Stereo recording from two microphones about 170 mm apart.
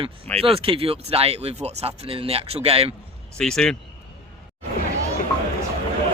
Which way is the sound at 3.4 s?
5° left (ahead or behind).